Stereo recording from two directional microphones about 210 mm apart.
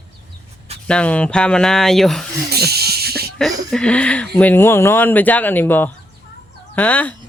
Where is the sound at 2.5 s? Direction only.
50° right (ahead or behind).